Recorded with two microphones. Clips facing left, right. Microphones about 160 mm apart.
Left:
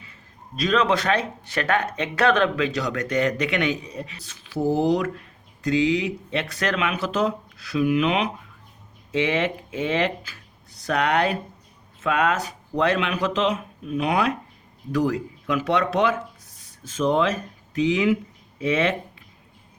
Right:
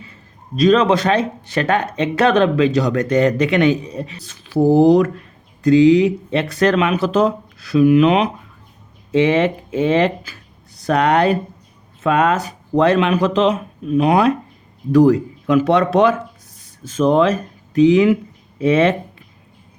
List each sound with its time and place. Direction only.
0.5 s speech: 25° right (ahead or behind)